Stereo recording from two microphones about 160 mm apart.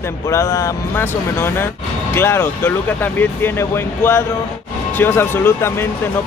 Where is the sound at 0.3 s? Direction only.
20° left (ahead or behind).